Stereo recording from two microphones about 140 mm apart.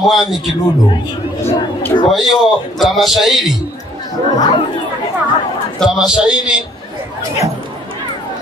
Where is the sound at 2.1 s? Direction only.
Centre (ahead or behind).